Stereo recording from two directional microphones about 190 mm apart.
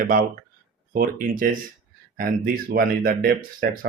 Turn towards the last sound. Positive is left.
turn(degrees=-50)  # may be behind; listen again after turning